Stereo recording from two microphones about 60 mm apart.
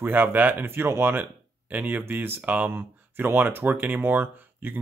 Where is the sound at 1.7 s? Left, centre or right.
Right.